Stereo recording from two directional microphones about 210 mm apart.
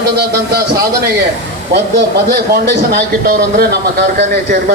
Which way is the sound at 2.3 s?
50° right (ahead or behind).